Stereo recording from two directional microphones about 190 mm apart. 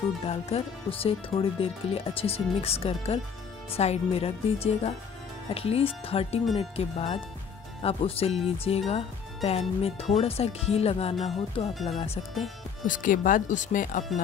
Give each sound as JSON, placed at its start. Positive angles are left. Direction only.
{"t": 0.2, "sound": "speech", "side_deg": 30}
{"t": 12.8, "sound": "speech", "side_deg": 45}